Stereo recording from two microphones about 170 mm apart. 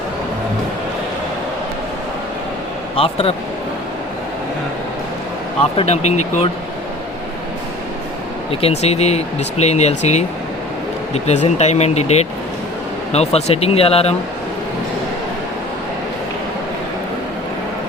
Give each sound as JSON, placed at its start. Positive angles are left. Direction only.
{"t": 2.9, "sound": "a man's voice", "side_deg": 35}
{"t": 5.7, "sound": "speech", "side_deg": 40}
{"t": 8.6, "sound": "speech", "side_deg": 40}